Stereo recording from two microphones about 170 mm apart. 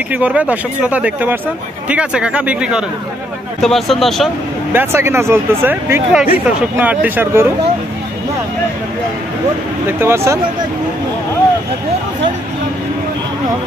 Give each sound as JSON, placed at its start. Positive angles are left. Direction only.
{"t": 0.1, "sound": "speech", "side_deg": -10}
{"t": 4.7, "sound": "speech", "side_deg": -15}
{"t": 9.8, "sound": "speech", "side_deg": -15}